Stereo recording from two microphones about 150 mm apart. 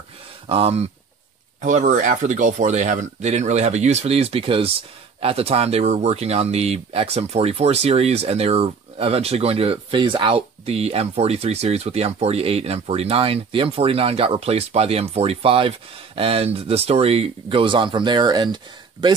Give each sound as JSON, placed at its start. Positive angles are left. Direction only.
{"t": 0.5, "sound": "speech", "side_deg": -40}
{"t": 1.6, "sound": "speech", "side_deg": -55}